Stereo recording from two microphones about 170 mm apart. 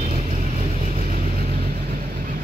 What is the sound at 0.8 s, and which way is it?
Vehicle, 45° right (ahead or behind).